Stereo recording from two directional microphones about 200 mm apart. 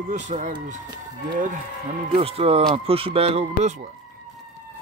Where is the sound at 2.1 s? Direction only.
30° right (ahead or behind).